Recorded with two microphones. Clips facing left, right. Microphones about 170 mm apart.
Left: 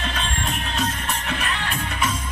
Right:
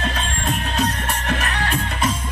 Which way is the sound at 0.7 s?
40° right (ahead or behind).